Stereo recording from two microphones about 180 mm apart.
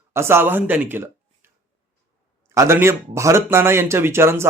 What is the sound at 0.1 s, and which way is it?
Speech, 15° right (ahead or behind).